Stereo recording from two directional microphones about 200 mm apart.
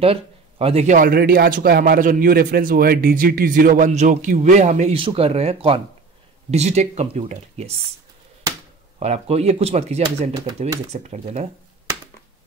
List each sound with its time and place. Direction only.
0.0 s a man's voice: 30° right (ahead or behind)
9.0 s speech: 35° right (ahead or behind)